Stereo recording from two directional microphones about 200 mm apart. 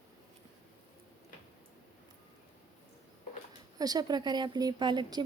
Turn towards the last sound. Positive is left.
turn(degrees=-20)  # may be behind; listen again after turning